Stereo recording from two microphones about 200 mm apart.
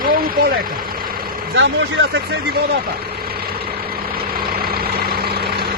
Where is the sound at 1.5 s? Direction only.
65° right (ahead or behind).